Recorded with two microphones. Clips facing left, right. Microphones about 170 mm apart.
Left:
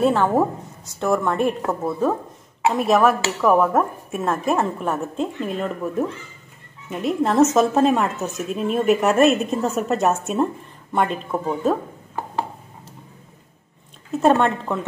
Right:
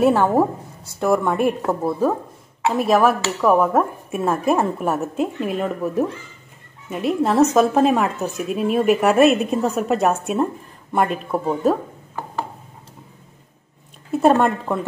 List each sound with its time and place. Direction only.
0.0 s a woman's voice: 10° right (ahead or behind)
14.3 s a woman's voice: 10° right (ahead or behind)